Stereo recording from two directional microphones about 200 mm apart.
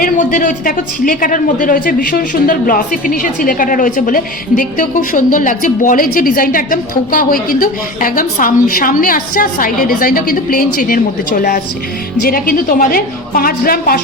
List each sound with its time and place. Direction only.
0.0 s speech: 45° left (ahead or behind)